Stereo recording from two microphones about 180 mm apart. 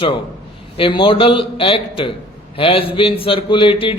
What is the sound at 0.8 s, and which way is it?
Speech, 30° left (ahead or behind).